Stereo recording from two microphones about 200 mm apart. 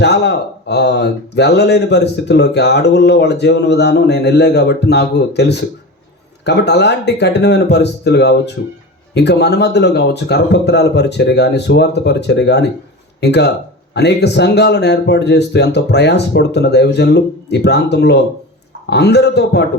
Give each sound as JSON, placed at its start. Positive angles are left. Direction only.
{"t": 0.0, "sound": "speech", "side_deg": 60}